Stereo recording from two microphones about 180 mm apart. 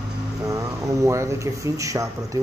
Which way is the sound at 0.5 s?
20° right (ahead or behind).